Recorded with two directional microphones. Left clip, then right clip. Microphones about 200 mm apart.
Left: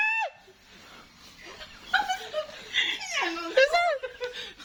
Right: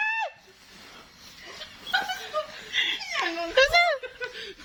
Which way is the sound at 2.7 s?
Centre (ahead or behind).